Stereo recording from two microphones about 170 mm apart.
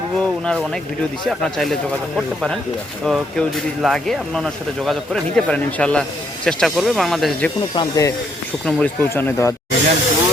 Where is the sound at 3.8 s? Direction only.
Centre (ahead or behind).